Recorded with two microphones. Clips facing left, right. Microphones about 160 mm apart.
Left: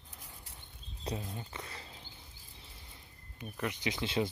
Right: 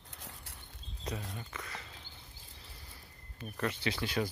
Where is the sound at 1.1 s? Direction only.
30° left (ahead or behind).